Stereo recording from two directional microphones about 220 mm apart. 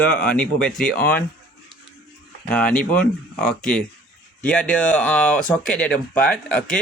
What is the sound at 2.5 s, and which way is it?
Speech, 5° left (ahead or behind).